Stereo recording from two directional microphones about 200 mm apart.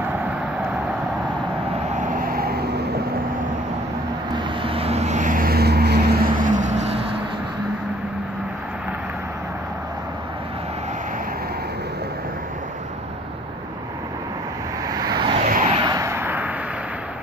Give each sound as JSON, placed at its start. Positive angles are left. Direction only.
{"t": 2.1, "sound": "vehicle", "side_deg": -45}
{"t": 4.4, "sound": "vehicle", "side_deg": -25}
{"t": 14.9, "sound": "vehicle", "side_deg": -20}
{"t": 15.3, "sound": "vehicle", "side_deg": -40}
{"t": 15.7, "sound": "vehicle", "side_deg": -20}